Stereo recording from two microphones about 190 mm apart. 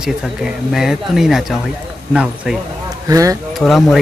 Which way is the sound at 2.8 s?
15° right (ahead or behind).